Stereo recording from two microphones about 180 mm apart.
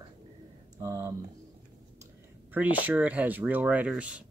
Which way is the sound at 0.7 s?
20° right (ahead or behind).